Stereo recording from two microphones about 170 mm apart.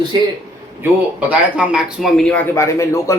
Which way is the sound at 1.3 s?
5° right (ahead or behind).